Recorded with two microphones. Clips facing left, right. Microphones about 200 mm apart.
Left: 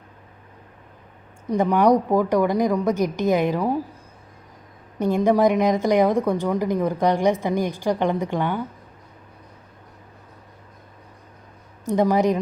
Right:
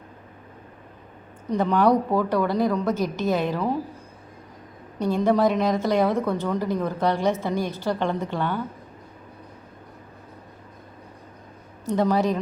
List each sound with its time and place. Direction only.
1.5 s a woman's voice: 15° left (ahead or behind)
4.9 s a woman's voice: 15° left (ahead or behind)
11.9 s a woman's voice: 15° left (ahead or behind)